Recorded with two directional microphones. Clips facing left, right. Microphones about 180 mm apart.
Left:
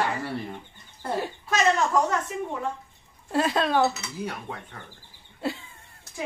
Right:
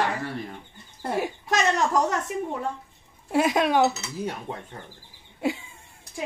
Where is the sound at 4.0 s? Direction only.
25° right (ahead or behind).